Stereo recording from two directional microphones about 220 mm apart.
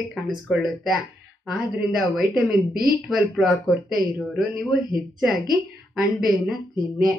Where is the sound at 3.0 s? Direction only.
Centre (ahead or behind).